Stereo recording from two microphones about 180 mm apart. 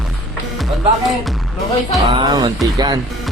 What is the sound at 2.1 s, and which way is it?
Speech, 25° right (ahead or behind).